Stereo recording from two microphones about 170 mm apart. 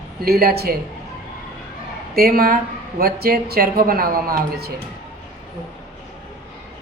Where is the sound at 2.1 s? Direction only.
60° right (ahead or behind).